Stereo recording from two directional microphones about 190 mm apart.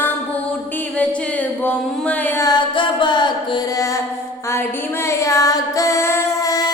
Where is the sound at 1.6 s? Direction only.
10° left (ahead or behind).